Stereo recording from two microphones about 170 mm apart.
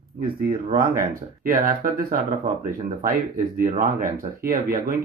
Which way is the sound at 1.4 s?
55° right (ahead or behind).